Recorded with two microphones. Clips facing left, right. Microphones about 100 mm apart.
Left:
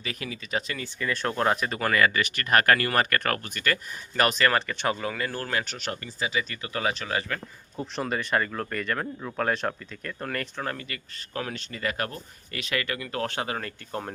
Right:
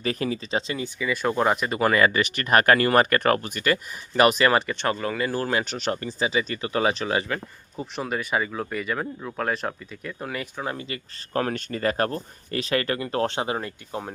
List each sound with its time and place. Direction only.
0.0 s speech: 35° right (ahead or behind)
0.9 s speech: 5° right (ahead or behind)
1.8 s speech: 25° right (ahead or behind)
4.7 s speech: 5° left (ahead or behind); by 7.4 s 20° right (ahead or behind)
7.8 s speech: 5° right (ahead or behind)
10.8 s speech: 25° right (ahead or behind)
11.3 s speech: 45° right (ahead or behind); by 14.0 s 20° right (ahead or behind)